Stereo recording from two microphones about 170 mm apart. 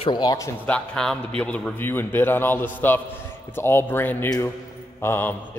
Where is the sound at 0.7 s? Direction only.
5° left (ahead or behind).